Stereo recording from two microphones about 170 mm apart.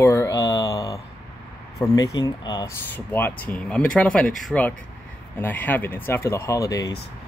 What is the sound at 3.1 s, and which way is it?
Speech, 10° left (ahead or behind).